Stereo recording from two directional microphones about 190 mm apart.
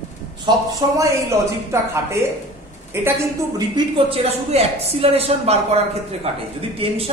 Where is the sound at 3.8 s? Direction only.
30° right (ahead or behind).